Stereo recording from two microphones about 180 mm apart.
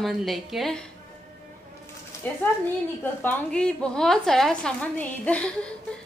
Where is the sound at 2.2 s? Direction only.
10° left (ahead or behind).